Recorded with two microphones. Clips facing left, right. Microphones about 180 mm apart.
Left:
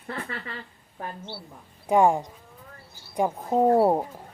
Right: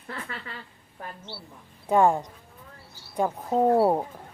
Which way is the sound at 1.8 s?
15° left (ahead or behind).